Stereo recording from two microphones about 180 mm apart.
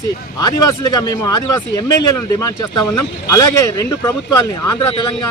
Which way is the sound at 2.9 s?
15° left (ahead or behind).